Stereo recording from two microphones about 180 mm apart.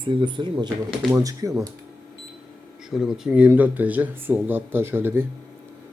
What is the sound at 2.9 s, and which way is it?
Speech, centre (ahead or behind).